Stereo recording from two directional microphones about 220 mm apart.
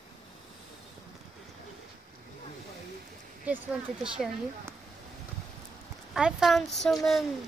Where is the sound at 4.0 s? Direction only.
5° right (ahead or behind).